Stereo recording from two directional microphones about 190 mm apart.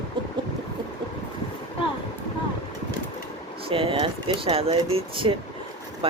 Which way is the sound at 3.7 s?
30° right (ahead or behind).